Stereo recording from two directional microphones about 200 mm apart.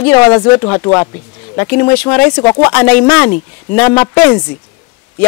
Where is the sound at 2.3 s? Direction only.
25° left (ahead or behind).